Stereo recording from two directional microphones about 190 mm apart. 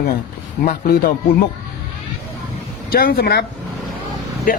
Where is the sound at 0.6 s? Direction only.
50° left (ahead or behind).